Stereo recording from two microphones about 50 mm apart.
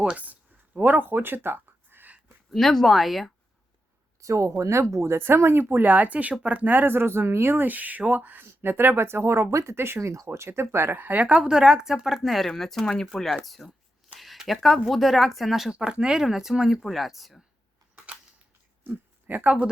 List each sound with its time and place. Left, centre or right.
0.8 s speech: right
2.5 s speech: centre
4.2 s speech: right
5.9 s speech: right
6.9 s speech: right
9.0 s speech: right
10.0 s speech: right
10.9 s speech: right
11.3 s speech: centre
14.2 s a sound: centre
14.8 s speech: centre
15.7 s speech: centre
17.9 s camera: right
18.9 s speech: right